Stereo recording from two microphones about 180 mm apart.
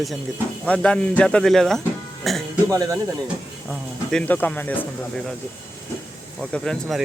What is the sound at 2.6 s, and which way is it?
Speech, 20° right (ahead or behind).